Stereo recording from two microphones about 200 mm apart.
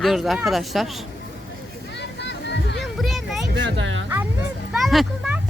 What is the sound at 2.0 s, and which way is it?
Music, 60° left (ahead or behind).